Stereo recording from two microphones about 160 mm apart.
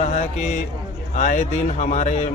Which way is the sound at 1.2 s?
50° left (ahead or behind).